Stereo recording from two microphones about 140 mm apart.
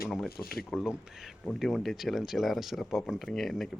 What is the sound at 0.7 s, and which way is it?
Speech, 5° right (ahead or behind).